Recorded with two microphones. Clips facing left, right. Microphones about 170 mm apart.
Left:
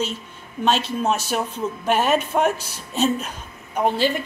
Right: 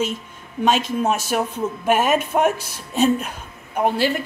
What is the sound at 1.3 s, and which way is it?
Speech, 5° right (ahead or behind).